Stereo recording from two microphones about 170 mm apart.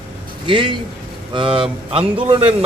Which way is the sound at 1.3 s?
30° right (ahead or behind).